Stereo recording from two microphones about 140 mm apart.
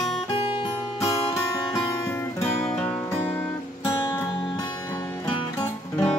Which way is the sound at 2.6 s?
10° left (ahead or behind).